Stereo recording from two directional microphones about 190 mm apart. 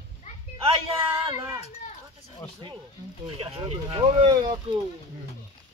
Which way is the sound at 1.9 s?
30° left (ahead or behind).